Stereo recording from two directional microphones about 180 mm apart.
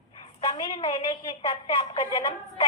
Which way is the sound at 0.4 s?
30° left (ahead or behind).